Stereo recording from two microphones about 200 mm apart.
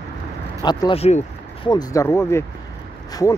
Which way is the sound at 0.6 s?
25° left (ahead or behind).